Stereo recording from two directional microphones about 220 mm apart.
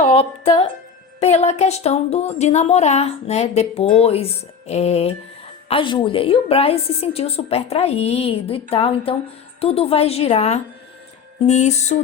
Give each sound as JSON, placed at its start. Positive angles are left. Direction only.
{"t": 0.0, "sound": "speech", "side_deg": 25}
{"t": 11.3, "sound": "music", "side_deg": 30}